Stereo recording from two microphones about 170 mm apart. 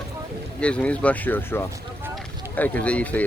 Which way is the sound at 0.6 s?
5° left (ahead or behind).